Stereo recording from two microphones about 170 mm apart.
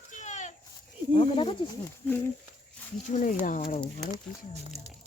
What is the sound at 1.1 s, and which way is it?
Speech, 35° left (ahead or behind).